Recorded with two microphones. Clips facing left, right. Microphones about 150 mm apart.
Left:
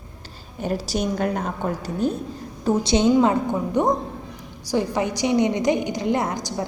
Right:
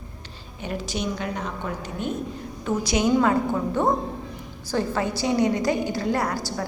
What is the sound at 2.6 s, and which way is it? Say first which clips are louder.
A woman's voice: left 4 dB; 30° left (ahead or behind).